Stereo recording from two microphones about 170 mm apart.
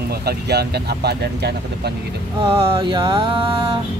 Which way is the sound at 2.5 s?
35° right (ahead or behind).